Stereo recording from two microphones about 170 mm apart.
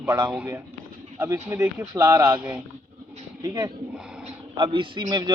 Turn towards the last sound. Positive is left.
turn(degrees=-25)  # may be behind; listen again after turning